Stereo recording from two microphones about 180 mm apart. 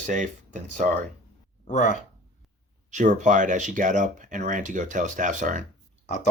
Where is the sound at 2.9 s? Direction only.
45° right (ahead or behind).